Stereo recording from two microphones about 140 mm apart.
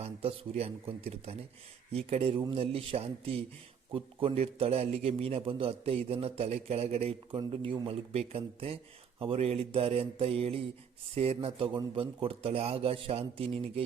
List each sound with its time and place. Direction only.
0.0 s a man's voice: 45° right (ahead or behind)